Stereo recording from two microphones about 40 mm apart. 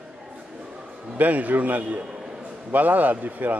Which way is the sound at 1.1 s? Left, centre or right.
Right.